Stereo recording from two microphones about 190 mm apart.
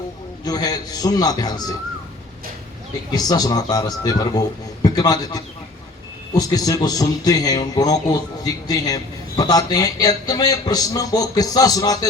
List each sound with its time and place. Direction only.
0.4 s a man's voice: 20° left (ahead or behind)
3.1 s a man's voice: 20° left (ahead or behind)